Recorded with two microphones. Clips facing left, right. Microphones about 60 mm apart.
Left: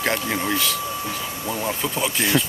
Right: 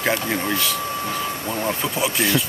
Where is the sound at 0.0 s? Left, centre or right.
Centre.